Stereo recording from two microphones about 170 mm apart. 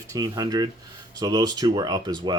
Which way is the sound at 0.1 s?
20° right (ahead or behind).